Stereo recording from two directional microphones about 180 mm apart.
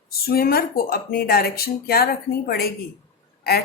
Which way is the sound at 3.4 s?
60° left (ahead or behind).